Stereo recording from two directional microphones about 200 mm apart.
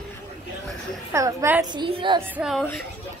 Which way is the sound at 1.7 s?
25° right (ahead or behind).